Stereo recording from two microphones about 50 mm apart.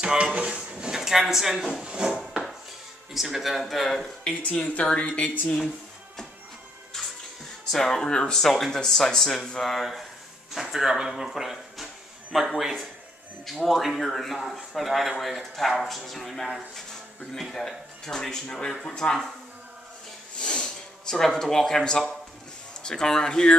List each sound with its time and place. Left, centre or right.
0.0 s speech: centre
0.9 s speech: centre
1.9 s wood: centre
3.1 s speech: centre
3.9 s speech: centre
4.4 s speech: left
7.7 s speech: centre
13.5 s speech: centre
20.3 s snort: centre
22.8 s speech: centre